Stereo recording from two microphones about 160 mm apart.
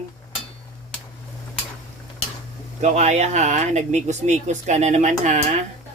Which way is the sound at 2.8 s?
45° right (ahead or behind).